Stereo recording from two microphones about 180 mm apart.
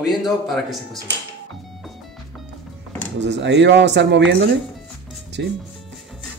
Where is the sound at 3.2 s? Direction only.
80° right.